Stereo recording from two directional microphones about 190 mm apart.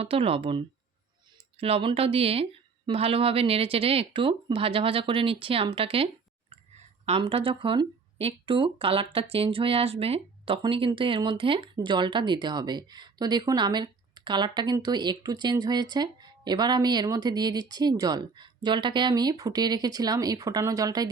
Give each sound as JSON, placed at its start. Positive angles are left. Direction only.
{"t": 0.0, "sound": "speech", "side_deg": -30}